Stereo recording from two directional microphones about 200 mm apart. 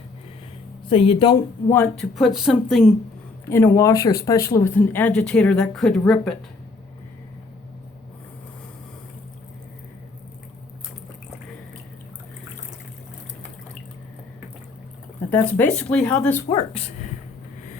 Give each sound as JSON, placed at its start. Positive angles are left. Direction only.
{"t": 0.9, "sound": "speech", "side_deg": 30}
{"t": 1.7, "sound": "speech", "side_deg": 10}
{"t": 2.1, "sound": "speech", "side_deg": 0}
{"t": 3.5, "sound": "speech", "side_deg": 15}
{"t": 15.3, "sound": "speech", "side_deg": 10}
{"t": 16.5, "sound": "speech", "side_deg": 25}